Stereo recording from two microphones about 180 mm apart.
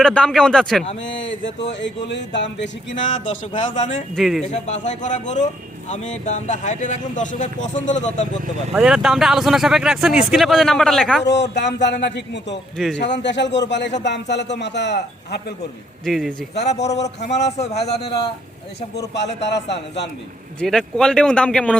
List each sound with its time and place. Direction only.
0.0 s speech: 5° left (ahead or behind)
1.1 s a sound: 90° left
3.2 s a man's voice: 30° left (ahead or behind)
3.7 s speech: 40° left (ahead or behind)
4.1 s speech: centre (ahead or behind)
4.4 s speech: 40° left (ahead or behind)
8.7 s speech: 5° right (ahead or behind)
11.3 s a man's voice: 70° left (ahead or behind)
12.7 s speech: 5° left (ahead or behind)
13.0 s a man's voice: 75° left (ahead or behind)
16.0 s speech: centre (ahead or behind)
16.6 s speech: 40° left (ahead or behind)
18.9 s a man's voice: 75° left (ahead or behind)
20.6 s speech: 5° left (ahead or behind)